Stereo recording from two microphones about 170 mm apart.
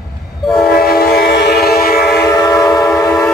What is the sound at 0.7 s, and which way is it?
Train, 65° left (ahead or behind).